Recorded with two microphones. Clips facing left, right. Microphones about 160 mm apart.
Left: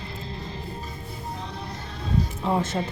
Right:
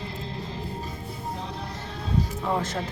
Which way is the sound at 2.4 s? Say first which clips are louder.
Left 2 dB; 25° left (ahead or behind).